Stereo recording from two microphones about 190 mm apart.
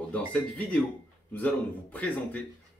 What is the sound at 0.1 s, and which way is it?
Speech, 5° left (ahead or behind).